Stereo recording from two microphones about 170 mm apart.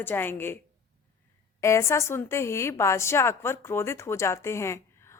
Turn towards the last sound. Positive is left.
turn(degrees=15)  # may be behind; listen again after turning